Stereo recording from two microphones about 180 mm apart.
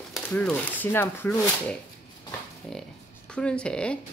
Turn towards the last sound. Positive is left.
turn(degrees=5)  # may be behind; listen again after turning